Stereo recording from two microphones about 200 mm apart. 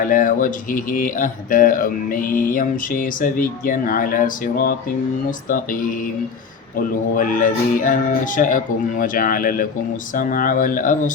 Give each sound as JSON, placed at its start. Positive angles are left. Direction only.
{"t": 0.0, "sound": "speech", "side_deg": 45}
{"t": 6.7, "sound": "speech", "side_deg": 45}